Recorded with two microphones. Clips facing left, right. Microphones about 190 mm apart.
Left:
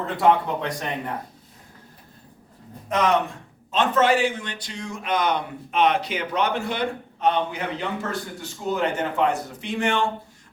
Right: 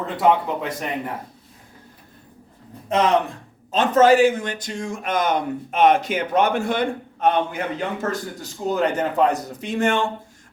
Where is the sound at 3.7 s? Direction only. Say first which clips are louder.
Right 5 dB; 40° right (ahead or behind).